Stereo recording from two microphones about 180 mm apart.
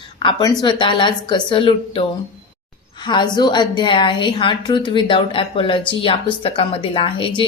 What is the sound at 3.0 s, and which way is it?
Speech, 25° left (ahead or behind).